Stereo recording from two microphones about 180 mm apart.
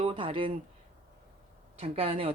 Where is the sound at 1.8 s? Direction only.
30° right (ahead or behind).